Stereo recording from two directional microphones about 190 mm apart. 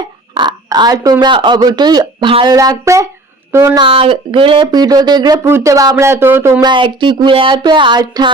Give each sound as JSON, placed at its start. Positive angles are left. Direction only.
{"t": 0.3, "sound": "speech", "side_deg": -25}